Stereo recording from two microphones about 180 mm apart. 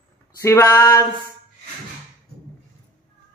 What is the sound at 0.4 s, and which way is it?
Speech, 15° left (ahead or behind).